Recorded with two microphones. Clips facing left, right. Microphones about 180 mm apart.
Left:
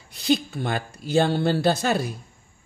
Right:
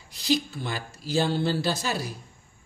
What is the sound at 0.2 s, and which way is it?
A man's voice, 55° left (ahead or behind).